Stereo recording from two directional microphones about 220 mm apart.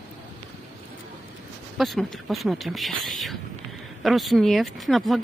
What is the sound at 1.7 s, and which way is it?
Speech, centre (ahead or behind).